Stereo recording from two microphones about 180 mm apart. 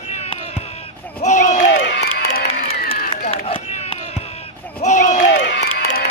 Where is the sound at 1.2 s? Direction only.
45° left (ahead or behind).